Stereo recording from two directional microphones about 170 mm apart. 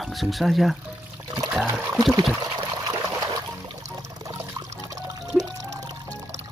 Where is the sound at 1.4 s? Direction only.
5° right (ahead or behind).